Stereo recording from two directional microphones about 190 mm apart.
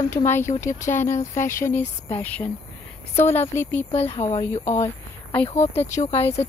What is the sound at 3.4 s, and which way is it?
Speech, 10° left (ahead or behind).